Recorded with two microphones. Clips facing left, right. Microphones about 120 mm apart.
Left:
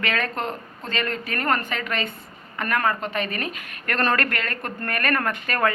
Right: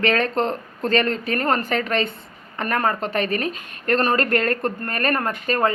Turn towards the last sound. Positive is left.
turn(degrees=-30)  # may be behind; listen again after turning